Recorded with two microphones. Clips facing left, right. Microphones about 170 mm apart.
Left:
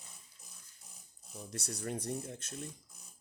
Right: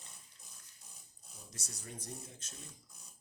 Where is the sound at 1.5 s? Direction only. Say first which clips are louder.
Left 11 dB; 65° left (ahead or behind).